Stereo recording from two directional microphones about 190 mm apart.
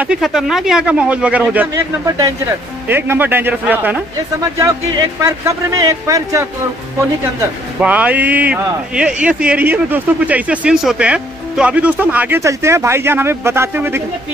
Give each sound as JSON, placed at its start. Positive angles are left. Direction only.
{"t": 0.0, "sound": "speech", "side_deg": -5}